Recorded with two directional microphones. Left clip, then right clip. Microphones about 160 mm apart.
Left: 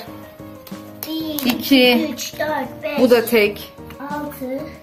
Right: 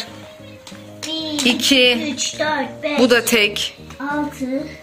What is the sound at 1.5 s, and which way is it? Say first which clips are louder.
A woman's voice: even; 5° right (ahead or behind).